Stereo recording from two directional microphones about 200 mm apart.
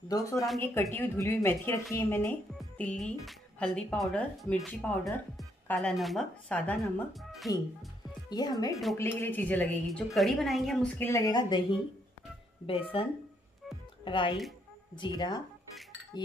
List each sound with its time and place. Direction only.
0.1 s a woman's voice: 15° left (ahead or behind)
7.5 s a woman's voice: 20° left (ahead or behind)
12.6 s speech: 25° left (ahead or behind)